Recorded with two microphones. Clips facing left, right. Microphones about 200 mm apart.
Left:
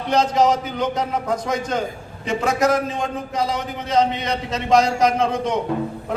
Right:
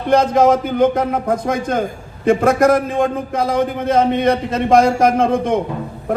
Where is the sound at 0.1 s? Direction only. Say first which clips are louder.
Right 5 dB; 55° right (ahead or behind).